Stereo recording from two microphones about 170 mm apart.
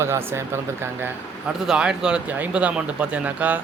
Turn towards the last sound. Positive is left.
turn(degrees=-10)  # may be behind; listen again after turning